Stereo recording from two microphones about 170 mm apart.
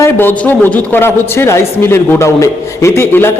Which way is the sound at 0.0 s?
10° left (ahead or behind).